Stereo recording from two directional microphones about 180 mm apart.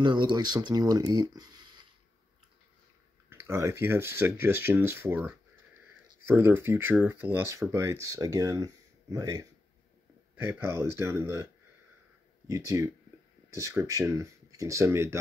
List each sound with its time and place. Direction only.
0.0 s speech: 25° right (ahead or behind)
3.3 s speech: 15° right (ahead or behind)
12.4 s speech: 15° right (ahead or behind)